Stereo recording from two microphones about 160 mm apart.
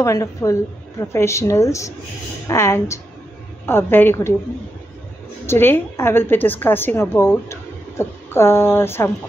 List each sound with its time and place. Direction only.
0.0 s a woman's voice: 20° left (ahead or behind)
5.5 s a woman's voice: 15° left (ahead or behind)